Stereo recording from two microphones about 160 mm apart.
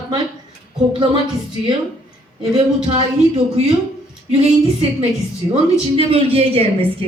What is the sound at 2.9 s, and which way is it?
Speech, 35° right (ahead or behind).